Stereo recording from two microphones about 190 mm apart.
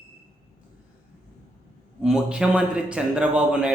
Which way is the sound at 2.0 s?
5° right (ahead or behind).